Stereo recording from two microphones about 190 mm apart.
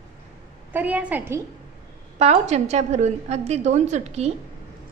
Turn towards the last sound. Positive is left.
turn(degrees=-35)  # may be behind; listen again after turning